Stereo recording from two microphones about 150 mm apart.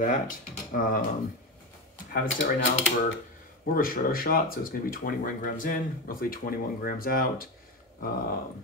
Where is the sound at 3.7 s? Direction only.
70° left (ahead or behind).